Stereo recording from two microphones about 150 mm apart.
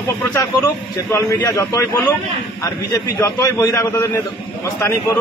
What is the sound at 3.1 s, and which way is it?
Speech, 20° left (ahead or behind).